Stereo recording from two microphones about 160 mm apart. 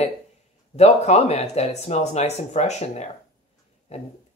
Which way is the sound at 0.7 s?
40° left (ahead or behind).